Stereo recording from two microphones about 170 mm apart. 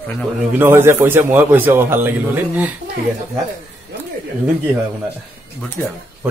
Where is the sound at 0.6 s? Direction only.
15° right (ahead or behind).